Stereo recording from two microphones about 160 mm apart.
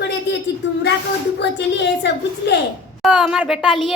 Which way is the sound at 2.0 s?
90° left.